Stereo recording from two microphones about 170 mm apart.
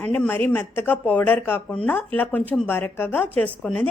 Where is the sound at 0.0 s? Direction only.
10° left (ahead or behind).